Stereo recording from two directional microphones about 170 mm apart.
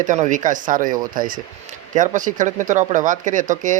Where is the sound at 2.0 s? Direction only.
50° right (ahead or behind).